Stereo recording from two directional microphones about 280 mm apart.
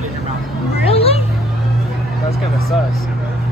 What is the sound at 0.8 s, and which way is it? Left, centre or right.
Children playing, left.